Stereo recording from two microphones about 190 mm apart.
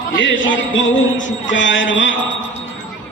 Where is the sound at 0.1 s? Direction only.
70° left (ahead or behind).